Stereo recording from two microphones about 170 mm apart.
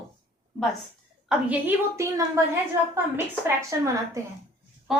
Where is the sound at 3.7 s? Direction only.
20° right (ahead or behind).